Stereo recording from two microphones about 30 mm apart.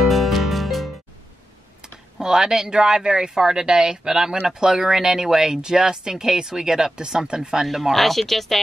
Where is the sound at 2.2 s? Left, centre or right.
Centre.